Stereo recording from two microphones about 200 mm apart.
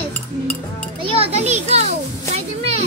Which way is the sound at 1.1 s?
30° right (ahead or behind).